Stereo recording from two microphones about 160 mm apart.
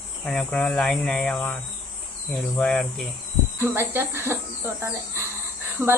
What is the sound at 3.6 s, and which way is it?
Speech, 15° right (ahead or behind).